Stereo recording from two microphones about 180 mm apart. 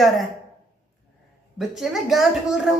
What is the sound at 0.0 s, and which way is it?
Speech, centre (ahead or behind).